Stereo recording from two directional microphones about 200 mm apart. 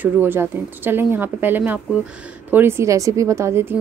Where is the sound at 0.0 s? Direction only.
10° right (ahead or behind).